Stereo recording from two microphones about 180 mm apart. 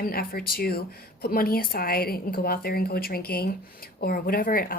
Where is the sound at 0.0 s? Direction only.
55° left (ahead or behind).